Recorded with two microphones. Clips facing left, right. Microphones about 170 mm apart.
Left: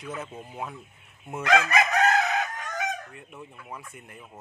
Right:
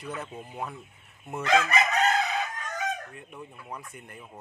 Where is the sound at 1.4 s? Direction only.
65° left (ahead or behind).